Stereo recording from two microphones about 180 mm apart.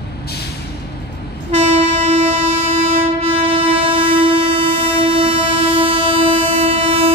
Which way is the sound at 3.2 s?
30° right (ahead or behind).